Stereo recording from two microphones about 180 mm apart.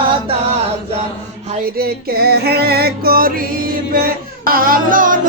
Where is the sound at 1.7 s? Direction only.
60° right (ahead or behind).